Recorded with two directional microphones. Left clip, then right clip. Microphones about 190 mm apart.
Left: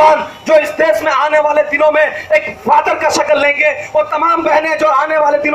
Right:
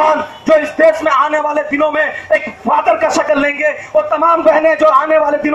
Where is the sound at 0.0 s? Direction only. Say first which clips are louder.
Left 3 dB; 40° right (ahead or behind).